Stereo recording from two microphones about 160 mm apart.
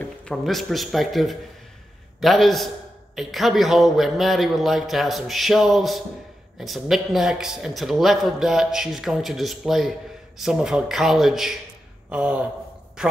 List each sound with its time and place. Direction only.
0.0 s a man's voice: 5° left (ahead or behind)